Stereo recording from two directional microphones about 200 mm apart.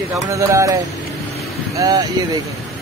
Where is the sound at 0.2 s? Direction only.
15° right (ahead or behind).